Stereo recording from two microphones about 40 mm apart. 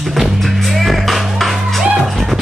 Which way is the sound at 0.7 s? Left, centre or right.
Centre.